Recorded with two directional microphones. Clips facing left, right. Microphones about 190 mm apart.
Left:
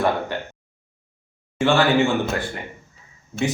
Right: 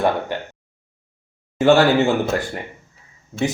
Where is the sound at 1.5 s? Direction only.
40° right (ahead or behind).